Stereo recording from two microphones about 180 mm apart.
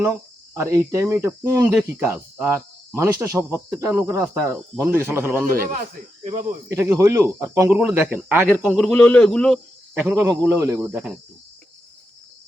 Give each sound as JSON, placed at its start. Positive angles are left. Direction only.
{"t": 0.0, "sound": "speech", "side_deg": -15}
{"t": 5.5, "sound": "speech", "side_deg": -55}
{"t": 6.7, "sound": "speech", "side_deg": -15}
{"t": 10.2, "sound": "speech", "side_deg": -15}